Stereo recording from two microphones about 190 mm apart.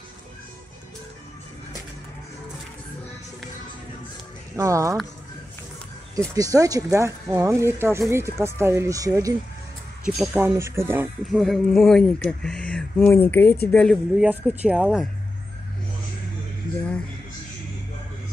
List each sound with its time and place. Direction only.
4.6 s speech: 15° right (ahead or behind)
6.3 s speech: 20° right (ahead or behind)
10.3 s speech: 10° right (ahead or behind)
11.2 s a woman's voice: centre (ahead or behind)
14.1 s speech: 5° right (ahead or behind)